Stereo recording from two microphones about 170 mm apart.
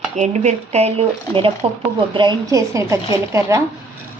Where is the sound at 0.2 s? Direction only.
40° right (ahead or behind).